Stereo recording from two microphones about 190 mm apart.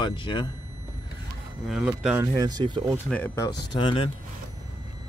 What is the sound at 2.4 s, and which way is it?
Speech, 20° right (ahead or behind).